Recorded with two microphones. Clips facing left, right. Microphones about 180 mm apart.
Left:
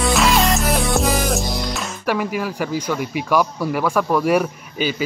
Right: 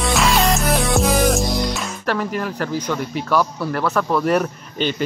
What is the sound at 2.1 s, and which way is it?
Speech, 10° left (ahead or behind).